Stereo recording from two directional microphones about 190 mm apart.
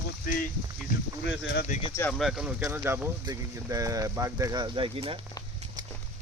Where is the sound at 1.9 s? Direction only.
10° left (ahead or behind); by 5.2 s 30° right (ahead or behind).